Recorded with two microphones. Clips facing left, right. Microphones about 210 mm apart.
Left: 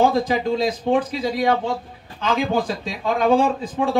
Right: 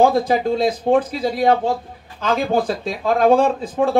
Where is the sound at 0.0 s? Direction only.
50° right (ahead or behind).